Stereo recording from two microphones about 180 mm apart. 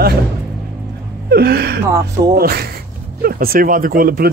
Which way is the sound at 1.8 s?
20° right (ahead or behind).